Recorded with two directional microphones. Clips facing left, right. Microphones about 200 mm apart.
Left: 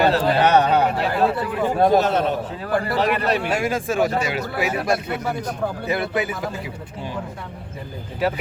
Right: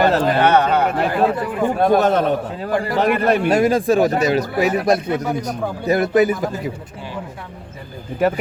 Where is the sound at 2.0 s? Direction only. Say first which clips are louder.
Right 3 dB; 55° right (ahead or behind).